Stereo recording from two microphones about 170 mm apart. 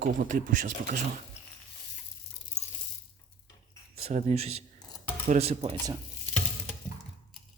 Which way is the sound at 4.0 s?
40° right (ahead or behind).